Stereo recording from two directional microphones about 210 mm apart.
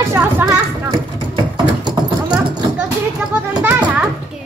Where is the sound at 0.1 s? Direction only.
10° right (ahead or behind).